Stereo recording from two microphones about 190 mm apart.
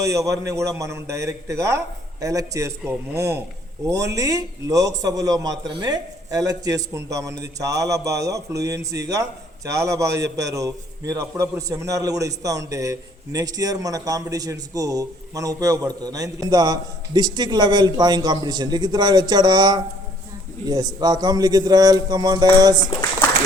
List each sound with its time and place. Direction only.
0.0 s a man's voice: 15° right (ahead or behind)